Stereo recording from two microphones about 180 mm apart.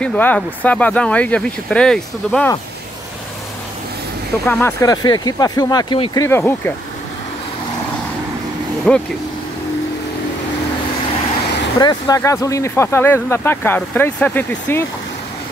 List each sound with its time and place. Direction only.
0.0 s speech: 10° left (ahead or behind)
4.5 s speech: 10° left (ahead or behind)
8.9 s speech: 5° left (ahead or behind)
11.8 s speech: 20° left (ahead or behind)